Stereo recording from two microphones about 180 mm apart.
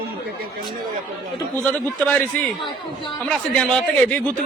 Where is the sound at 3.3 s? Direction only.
5° left (ahead or behind).